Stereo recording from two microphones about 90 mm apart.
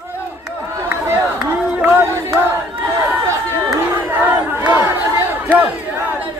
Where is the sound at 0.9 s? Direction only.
25° right (ahead or behind).